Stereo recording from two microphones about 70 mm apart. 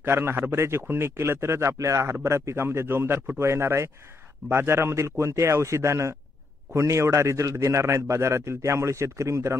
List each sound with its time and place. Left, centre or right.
0.0 s a man's voice: right